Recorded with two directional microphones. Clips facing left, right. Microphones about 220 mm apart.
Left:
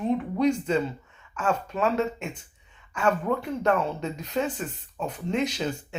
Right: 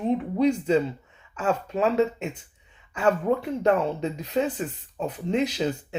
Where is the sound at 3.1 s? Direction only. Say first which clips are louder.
Right 3 dB; 30° right (ahead or behind).